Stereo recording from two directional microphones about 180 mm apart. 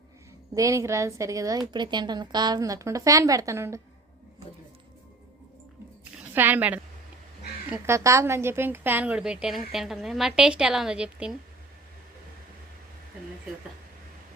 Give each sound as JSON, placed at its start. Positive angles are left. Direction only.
{"t": 0.5, "sound": "a woman's voice", "side_deg": -15}
{"t": 6.3, "sound": "a woman's voice", "side_deg": -10}